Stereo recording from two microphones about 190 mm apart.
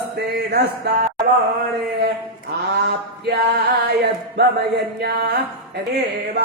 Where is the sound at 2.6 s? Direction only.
60° right (ahead or behind).